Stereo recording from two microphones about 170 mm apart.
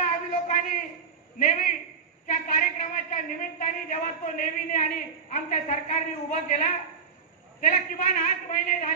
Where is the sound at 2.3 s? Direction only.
50° left (ahead or behind).